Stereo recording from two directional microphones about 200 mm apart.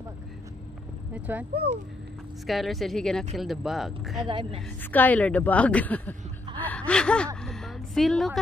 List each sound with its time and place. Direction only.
1.1 s speech: 10° right (ahead or behind)
2.4 s speech: centre (ahead or behind)
4.3 s a woman's voice: 25° right (ahead or behind)
4.9 s a woman's voice: 10° left (ahead or behind)
7.4 s a sound: centre (ahead or behind)